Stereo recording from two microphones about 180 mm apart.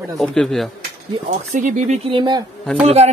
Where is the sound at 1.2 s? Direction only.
40° right (ahead or behind).